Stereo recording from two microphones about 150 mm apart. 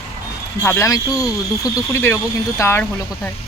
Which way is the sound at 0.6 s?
15° left (ahead or behind).